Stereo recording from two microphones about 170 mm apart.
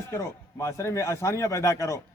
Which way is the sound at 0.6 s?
15° left (ahead or behind).